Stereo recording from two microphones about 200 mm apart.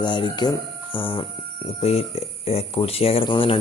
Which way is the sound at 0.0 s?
25° left (ahead or behind).